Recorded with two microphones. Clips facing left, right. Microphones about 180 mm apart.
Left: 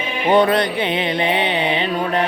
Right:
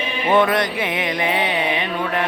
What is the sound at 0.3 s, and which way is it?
Mantra, 30° left (ahead or behind).